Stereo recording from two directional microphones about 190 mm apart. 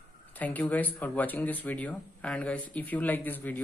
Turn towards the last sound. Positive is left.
turn(degrees=10)  # may be behind; listen again after turning